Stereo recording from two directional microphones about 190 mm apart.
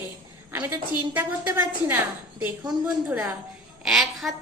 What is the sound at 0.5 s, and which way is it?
Speech, 10° right (ahead or behind).